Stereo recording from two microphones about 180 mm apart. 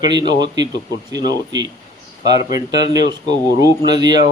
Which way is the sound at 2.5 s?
20° right (ahead or behind).